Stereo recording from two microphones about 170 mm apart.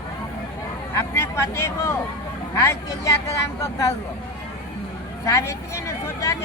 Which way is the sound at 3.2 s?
15° left (ahead or behind).